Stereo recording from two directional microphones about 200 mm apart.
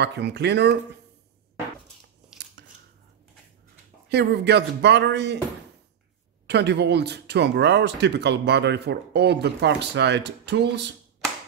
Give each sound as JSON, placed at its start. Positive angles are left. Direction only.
{"t": 0.0, "sound": "speech", "side_deg": -55}
{"t": 2.6, "sound": "scissors", "side_deg": -55}
{"t": 4.1, "sound": "speech", "side_deg": -55}
{"t": 6.4, "sound": "speech", "side_deg": -60}